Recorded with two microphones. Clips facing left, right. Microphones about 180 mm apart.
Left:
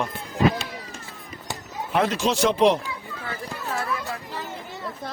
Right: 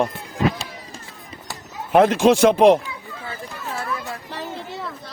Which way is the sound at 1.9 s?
50° right (ahead or behind).